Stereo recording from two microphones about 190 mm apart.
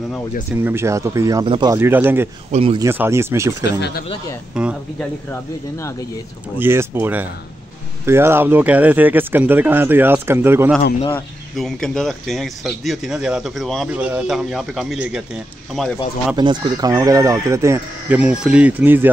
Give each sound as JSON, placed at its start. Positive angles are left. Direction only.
{"t": 0.6, "sound": "speech", "side_deg": -10}
{"t": 2.5, "sound": "speech", "side_deg": -30}
{"t": 2.8, "sound": "speech", "side_deg": -15}
{"t": 4.6, "sound": "speech", "side_deg": -5}
{"t": 5.3, "sound": "speech", "side_deg": 15}
{"t": 6.6, "sound": "speech", "side_deg": -15}
{"t": 11.1, "sound": "speech", "side_deg": 0}
{"t": 16.3, "sound": "speech", "side_deg": -20}